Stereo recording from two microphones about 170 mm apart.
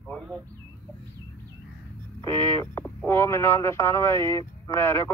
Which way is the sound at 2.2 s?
15° left (ahead or behind).